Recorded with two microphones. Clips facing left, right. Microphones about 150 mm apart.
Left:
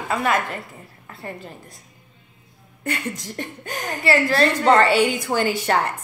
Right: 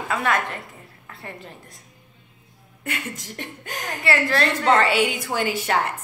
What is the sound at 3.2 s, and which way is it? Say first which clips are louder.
Chuckle: left 4 dB; 35° left (ahead or behind).